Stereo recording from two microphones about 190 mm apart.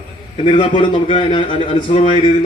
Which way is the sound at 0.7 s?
25° left (ahead or behind).